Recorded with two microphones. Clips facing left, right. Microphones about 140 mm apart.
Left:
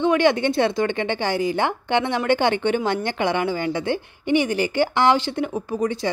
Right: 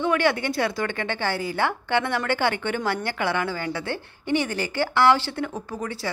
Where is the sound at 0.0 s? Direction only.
20° left (ahead or behind).